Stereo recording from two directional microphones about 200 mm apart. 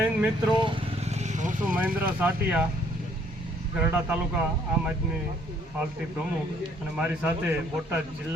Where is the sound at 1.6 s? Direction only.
5° right (ahead or behind).